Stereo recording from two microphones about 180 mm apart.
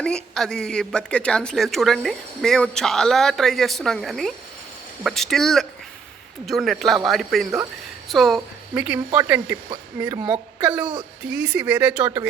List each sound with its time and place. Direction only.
0.0 s a woman's voice: 5° left (ahead or behind)
8.7 s speech: 10° right (ahead or behind)
9.6 s speech: 20° right (ahead or behind)
10.6 s a woman's voice: 5° right (ahead or behind)
12.0 s speech: 25° right (ahead or behind)